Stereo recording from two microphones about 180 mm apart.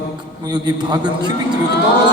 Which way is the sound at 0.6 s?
25° right (ahead or behind).